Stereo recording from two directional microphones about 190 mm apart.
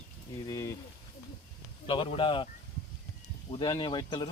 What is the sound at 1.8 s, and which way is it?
Speech, 25° left (ahead or behind).